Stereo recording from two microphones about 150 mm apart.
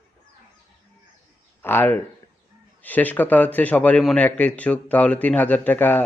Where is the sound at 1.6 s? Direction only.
15° left (ahead or behind).